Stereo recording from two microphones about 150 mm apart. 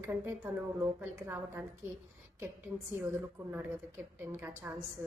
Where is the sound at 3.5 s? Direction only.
15° right (ahead or behind).